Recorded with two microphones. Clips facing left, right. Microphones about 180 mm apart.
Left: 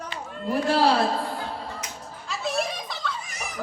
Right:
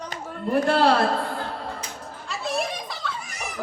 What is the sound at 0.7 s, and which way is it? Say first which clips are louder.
Speech: even; 55° right (ahead or behind).